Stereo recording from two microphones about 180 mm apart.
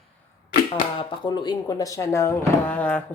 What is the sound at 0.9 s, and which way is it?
A woman's voice, 25° left (ahead or behind).